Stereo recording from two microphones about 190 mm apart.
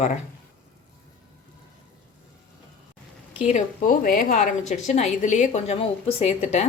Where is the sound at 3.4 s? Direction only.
35° left (ahead or behind).